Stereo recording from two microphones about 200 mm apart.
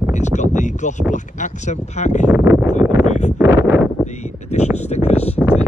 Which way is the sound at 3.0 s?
35° left (ahead or behind).